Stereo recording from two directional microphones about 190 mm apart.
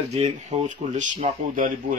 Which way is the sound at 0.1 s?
35° right (ahead or behind).